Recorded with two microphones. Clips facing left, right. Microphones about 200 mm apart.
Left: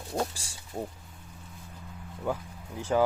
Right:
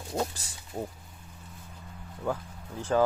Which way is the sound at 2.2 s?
10° left (ahead or behind).